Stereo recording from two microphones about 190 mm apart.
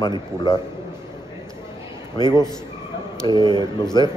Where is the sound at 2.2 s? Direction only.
20° left (ahead or behind).